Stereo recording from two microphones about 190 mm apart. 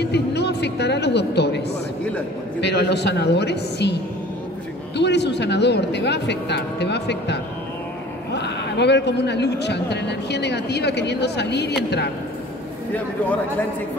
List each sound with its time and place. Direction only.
0.0 s a sound: 60° left (ahead or behind)
2.6 s speech: 60° left (ahead or behind)
4.9 s speech: 65° left (ahead or behind)
12.9 s speech: 10° left (ahead or behind)